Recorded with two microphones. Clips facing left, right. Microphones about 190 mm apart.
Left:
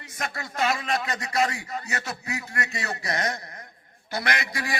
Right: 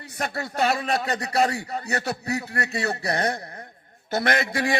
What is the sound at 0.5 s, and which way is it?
A man's voice, 35° right (ahead or behind).